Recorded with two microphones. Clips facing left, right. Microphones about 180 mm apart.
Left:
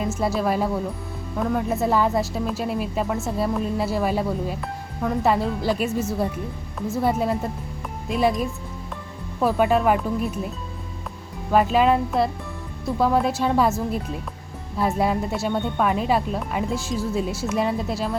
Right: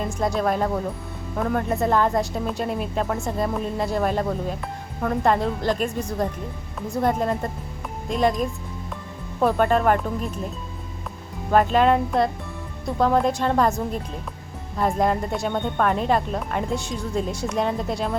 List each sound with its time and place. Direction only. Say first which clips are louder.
0.2 s speech: right 1 dB; 5° left (ahead or behind)
11.5 s speech: even; 5° left (ahead or behind)